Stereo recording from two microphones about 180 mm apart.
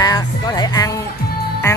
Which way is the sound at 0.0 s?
20° left (ahead or behind).